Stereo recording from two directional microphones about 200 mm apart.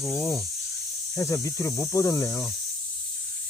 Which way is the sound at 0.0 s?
15° left (ahead or behind).